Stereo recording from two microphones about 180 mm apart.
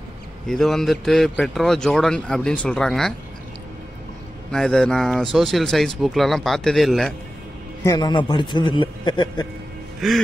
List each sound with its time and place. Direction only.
0.5 s speech: centre (ahead or behind)
4.5 s speech: 5° left (ahead or behind)
7.8 s a man's voice: 20° left (ahead or behind)
9.9 s music: centre (ahead or behind)